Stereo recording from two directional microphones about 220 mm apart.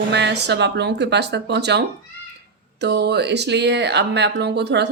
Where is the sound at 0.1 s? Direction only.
50° right (ahead or behind).